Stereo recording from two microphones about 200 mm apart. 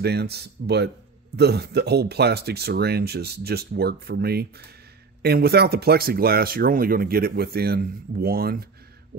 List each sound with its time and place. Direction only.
0.0 s speech: 55° right (ahead or behind)